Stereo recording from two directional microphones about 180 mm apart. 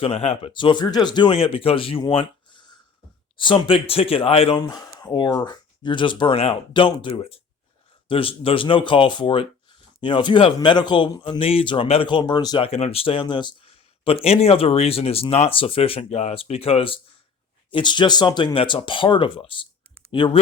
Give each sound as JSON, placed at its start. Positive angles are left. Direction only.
{"t": 0.0, "sound": "speech", "side_deg": 35}